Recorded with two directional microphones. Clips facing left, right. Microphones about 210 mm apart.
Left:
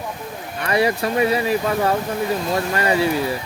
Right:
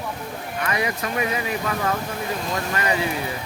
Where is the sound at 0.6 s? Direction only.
35° left (ahead or behind).